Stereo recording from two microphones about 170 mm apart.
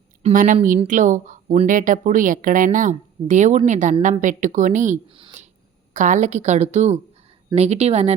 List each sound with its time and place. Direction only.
0.2 s speech: 45° right (ahead or behind)
5.1 s speech: 30° right (ahead or behind)
5.9 s a woman's voice: 45° right (ahead or behind)